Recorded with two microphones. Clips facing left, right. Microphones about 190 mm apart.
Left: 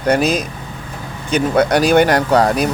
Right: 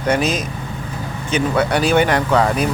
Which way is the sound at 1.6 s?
40° left (ahead or behind).